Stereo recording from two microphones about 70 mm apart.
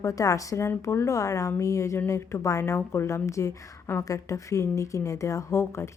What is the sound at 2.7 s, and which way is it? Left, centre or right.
Speech, left.